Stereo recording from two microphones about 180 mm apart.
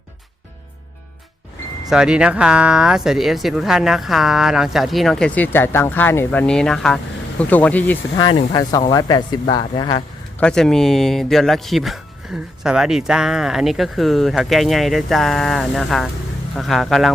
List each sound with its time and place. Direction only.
1.9 s speech: 5° right (ahead or behind)
8.1 s speech: 25° left (ahead or behind)
10.4 s speech: 5° left (ahead or behind)